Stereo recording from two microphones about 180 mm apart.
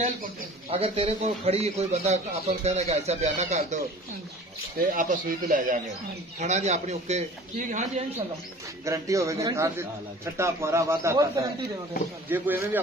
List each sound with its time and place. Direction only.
0.0 s a man's voice: 35° right (ahead or behind)
8.8 s a man's voice: 15° right (ahead or behind)